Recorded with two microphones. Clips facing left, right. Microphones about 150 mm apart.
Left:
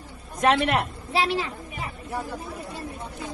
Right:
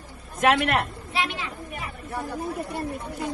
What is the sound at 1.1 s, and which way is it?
Speech, 35° left (ahead or behind).